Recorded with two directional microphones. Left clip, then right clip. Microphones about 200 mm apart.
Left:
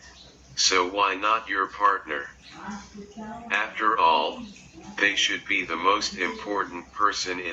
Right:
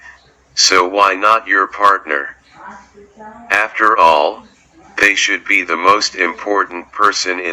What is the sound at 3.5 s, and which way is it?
Speech, 20° right (ahead or behind).